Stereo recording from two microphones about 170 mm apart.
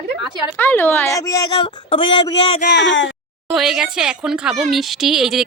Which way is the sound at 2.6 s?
90° left.